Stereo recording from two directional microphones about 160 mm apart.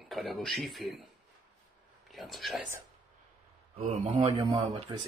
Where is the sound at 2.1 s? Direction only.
Centre (ahead or behind).